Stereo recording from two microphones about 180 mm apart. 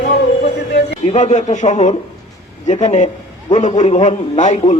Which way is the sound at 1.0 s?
40° left (ahead or behind).